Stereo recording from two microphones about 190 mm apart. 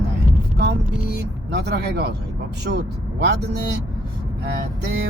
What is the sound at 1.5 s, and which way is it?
Speech, 60° right (ahead or behind).